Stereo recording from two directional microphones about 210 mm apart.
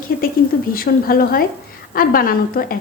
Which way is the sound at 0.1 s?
45° left (ahead or behind).